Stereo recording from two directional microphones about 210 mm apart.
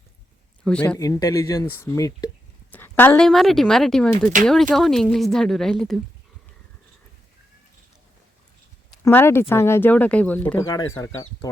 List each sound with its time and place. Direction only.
0.6 s speech: 5° left (ahead or behind)
9.0 s speech: 10° left (ahead or behind)